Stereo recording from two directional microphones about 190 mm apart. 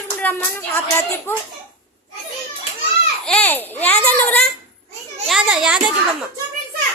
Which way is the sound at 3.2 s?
5° left (ahead or behind).